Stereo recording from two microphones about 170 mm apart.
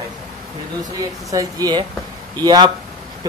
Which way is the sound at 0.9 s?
20° right (ahead or behind).